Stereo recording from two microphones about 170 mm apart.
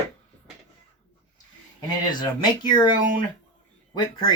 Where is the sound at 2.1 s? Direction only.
25° left (ahead or behind).